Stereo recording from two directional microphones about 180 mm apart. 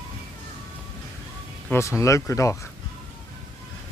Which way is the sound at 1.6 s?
15° left (ahead or behind).